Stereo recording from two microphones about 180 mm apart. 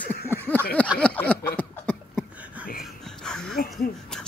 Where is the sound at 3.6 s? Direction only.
55° left (ahead or behind).